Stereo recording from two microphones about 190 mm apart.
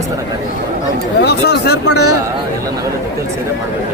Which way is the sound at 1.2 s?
60° left (ahead or behind).